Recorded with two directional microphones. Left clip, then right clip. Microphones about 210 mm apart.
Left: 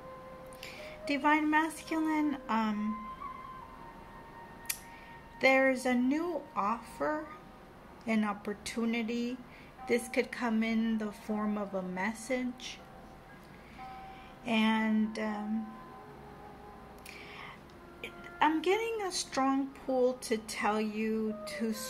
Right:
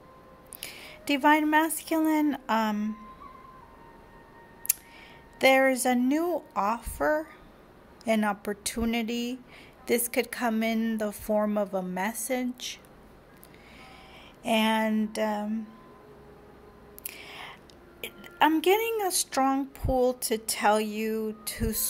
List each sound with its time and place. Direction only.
0.6 s a woman's voice: 55° right (ahead or behind)
5.4 s speech: 55° right (ahead or behind)
14.4 s speech: 55° right (ahead or behind)
17.1 s whispering: 55° right (ahead or behind)
18.0 s speech: 50° right (ahead or behind)